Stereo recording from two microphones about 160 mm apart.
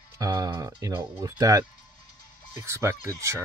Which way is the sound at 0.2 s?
20° right (ahead or behind).